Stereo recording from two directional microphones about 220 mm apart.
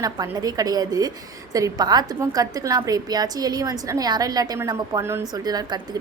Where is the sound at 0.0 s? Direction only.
15° right (ahead or behind).